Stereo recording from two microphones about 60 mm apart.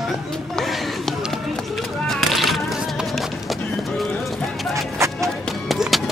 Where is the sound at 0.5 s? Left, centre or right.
Centre.